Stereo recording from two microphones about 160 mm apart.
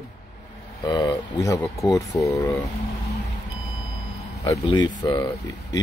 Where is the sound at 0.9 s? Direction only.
20° left (ahead or behind).